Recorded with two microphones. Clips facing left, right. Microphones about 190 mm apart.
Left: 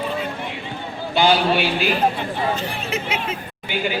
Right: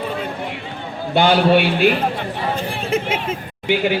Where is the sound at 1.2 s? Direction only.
60° right (ahead or behind).